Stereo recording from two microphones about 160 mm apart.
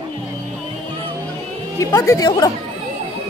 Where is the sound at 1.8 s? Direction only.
20° left (ahead or behind).